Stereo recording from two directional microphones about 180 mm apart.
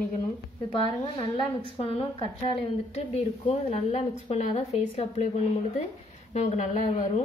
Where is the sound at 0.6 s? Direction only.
30° left (ahead or behind).